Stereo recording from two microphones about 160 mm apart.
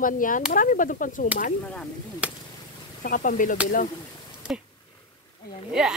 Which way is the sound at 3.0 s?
60° left (ahead or behind).